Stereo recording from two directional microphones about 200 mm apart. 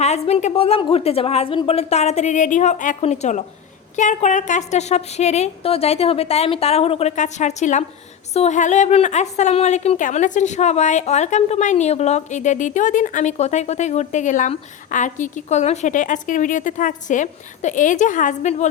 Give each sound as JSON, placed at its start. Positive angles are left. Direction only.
{"t": 0.0, "sound": "a woman's voice", "side_deg": 35}